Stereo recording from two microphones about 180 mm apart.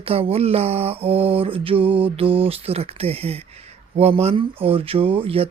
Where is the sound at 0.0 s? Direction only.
30° right (ahead or behind).